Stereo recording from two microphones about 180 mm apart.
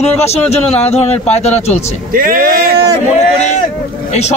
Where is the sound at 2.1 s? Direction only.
50° right (ahead or behind).